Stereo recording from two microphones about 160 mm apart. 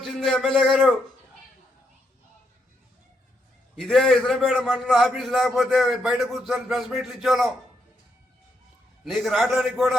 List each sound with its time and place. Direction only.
0.0 s speech: centre (ahead or behind)
3.8 s a man's voice: centre (ahead or behind)
9.0 s a man's voice: centre (ahead or behind)